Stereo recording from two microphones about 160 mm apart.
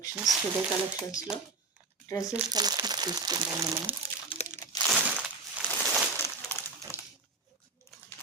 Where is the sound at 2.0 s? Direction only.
20° left (ahead or behind).